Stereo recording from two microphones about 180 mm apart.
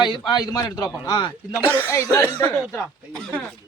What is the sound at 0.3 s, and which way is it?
A man's voice, 20° left (ahead or behind).